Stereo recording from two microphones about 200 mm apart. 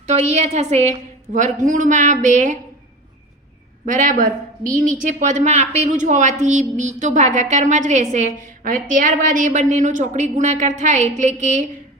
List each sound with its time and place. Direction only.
0.0 s a woman's voice: 35° right (ahead or behind)
3.8 s a woman's voice: 40° right (ahead or behind)